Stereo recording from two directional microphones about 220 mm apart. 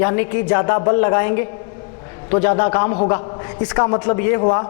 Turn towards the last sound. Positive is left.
turn(degrees=25)  # may be behind; listen again after turning